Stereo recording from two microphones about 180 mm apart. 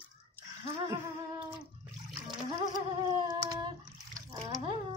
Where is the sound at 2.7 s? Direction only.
20° right (ahead or behind).